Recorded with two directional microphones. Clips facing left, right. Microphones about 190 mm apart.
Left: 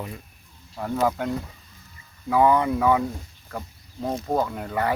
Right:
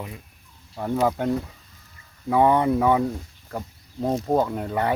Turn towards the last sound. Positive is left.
turn(degrees=-30)  # may be behind; listen again after turning